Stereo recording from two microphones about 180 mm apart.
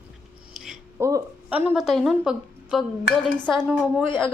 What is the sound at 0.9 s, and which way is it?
Speech, 15° right (ahead or behind).